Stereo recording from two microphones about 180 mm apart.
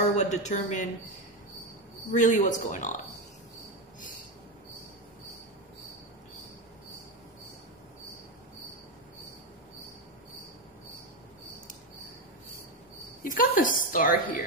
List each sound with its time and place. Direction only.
0.2 s speech: 40° left (ahead or behind)
2.1 s a woman's voice: 45° left (ahead or behind)
13.2 s a woman's voice: 50° left (ahead or behind)